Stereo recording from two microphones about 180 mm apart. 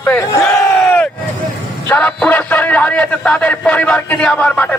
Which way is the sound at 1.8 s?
10° left (ahead or behind).